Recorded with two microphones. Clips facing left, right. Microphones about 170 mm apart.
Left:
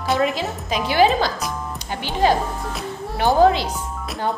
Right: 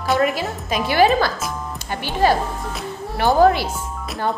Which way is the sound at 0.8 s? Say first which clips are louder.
Right 1 dB; 15° left (ahead or behind).